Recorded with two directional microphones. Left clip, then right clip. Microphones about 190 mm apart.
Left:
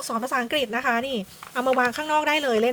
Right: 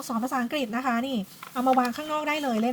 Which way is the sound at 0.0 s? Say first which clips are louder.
Left 3 dB; 35° left (ahead or behind).